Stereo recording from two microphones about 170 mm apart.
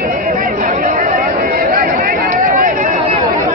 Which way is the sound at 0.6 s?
50° right (ahead or behind).